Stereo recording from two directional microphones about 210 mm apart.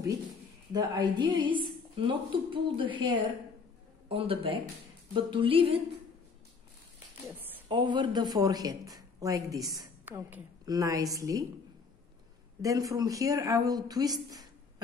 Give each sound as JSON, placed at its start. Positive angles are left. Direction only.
{"t": 0.7, "sound": "a woman's voice", "side_deg": -20}
{"t": 7.6, "sound": "speech", "side_deg": -20}
{"t": 12.6, "sound": "speech", "side_deg": -15}